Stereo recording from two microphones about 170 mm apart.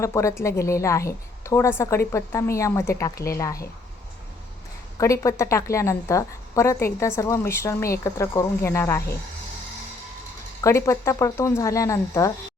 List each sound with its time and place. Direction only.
0.0 s a woman's voice: 15° left (ahead or behind)
4.9 s a woman's voice: 20° left (ahead or behind)
10.6 s a woman's voice: 15° left (ahead or behind)